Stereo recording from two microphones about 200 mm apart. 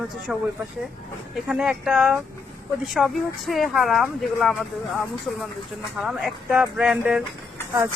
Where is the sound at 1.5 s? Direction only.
5° right (ahead or behind).